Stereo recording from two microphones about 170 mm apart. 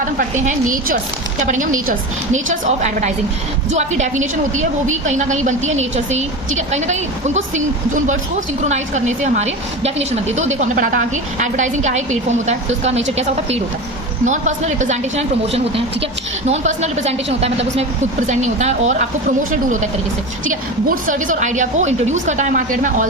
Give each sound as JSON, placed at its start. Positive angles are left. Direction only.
{"t": 0.2, "sound": "a woman's voice", "side_deg": -50}
{"t": 14.3, "sound": "a woman's voice", "side_deg": -45}